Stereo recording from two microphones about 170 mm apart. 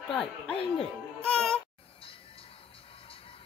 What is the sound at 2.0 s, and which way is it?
Music, 35° left (ahead or behind).